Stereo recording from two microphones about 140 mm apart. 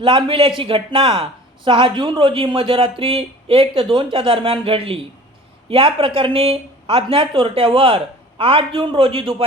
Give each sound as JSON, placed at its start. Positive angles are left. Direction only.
{"t": 0.0, "sound": "speech", "side_deg": -35}